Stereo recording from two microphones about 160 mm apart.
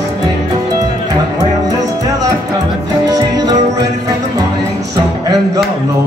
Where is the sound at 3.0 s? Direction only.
25° right (ahead or behind).